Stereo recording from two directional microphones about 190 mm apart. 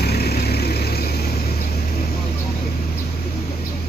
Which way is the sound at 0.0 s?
55° left (ahead or behind).